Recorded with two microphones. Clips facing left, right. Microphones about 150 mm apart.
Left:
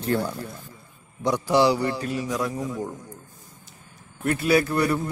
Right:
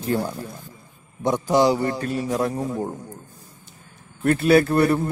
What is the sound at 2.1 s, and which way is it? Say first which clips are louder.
Speech: right 4 dB; 30° right (ahead or behind).